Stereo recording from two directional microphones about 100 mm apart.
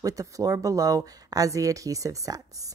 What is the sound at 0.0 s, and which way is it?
A woman's voice, 35° right (ahead or behind).